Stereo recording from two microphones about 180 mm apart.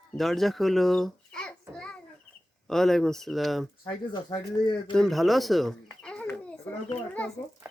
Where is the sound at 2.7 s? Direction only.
Centre (ahead or behind).